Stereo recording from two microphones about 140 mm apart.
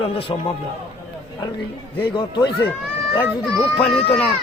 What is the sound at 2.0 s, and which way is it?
Speech, 30° left (ahead or behind).